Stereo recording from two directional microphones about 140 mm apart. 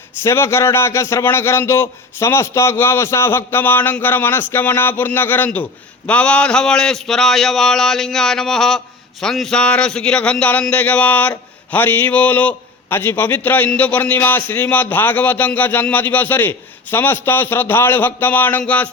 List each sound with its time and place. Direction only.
0.2 s a man's voice: 20° left (ahead or behind)